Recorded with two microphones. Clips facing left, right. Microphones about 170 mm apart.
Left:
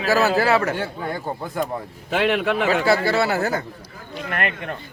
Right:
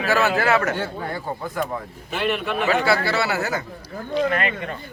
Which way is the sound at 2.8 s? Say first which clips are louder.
Left 2 dB; 45° left (ahead or behind).